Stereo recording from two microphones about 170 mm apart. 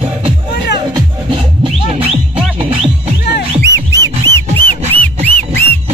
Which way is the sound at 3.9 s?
20° right (ahead or behind).